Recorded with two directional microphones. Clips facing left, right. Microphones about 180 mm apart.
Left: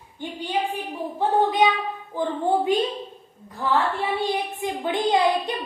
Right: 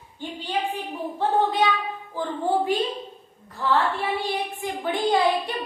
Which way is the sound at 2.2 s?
20° left (ahead or behind).